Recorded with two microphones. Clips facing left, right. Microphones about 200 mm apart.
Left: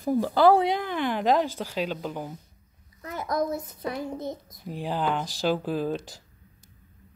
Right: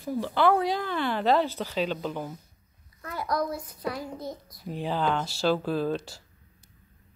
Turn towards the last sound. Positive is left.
turn(degrees=15)  # may be behind; listen again after turning